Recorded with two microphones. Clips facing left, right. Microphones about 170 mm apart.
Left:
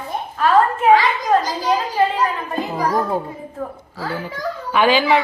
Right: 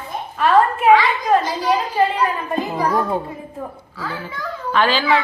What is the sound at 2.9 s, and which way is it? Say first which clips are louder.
Speech: even; centre (ahead or behind).